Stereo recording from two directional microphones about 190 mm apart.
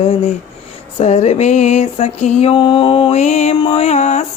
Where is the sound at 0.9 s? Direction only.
35° left (ahead or behind).